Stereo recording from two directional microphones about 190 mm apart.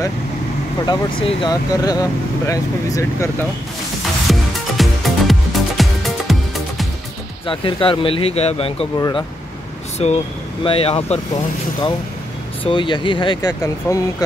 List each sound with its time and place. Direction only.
1.2 s speech: 20° left (ahead or behind)
4.3 s music: centre (ahead or behind)
7.4 s speech: 25° left (ahead or behind)
9.9 s speech: 35° left (ahead or behind)
12.6 s speech: 25° left (ahead or behind)